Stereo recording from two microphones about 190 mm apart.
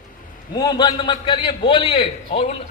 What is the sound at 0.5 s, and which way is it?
A man's voice, 20° left (ahead or behind).